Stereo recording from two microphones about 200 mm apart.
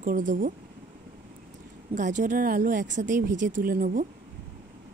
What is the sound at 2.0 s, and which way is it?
Speech, 40° right (ahead or behind).